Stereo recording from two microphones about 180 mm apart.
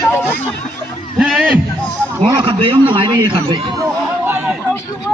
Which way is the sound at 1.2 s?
5° right (ahead or behind).